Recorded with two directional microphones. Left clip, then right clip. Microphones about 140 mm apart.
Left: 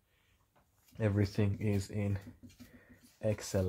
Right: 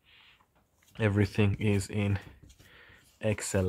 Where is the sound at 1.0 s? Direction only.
35° right (ahead or behind).